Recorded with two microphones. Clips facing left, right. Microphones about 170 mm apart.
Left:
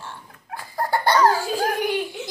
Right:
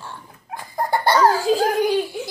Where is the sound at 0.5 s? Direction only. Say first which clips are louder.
Right 2 dB; 15° right (ahead or behind).